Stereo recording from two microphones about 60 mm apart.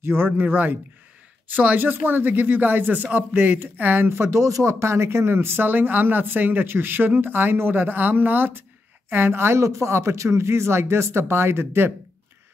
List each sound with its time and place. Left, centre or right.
0.0 s speech: right
4.1 s speech: right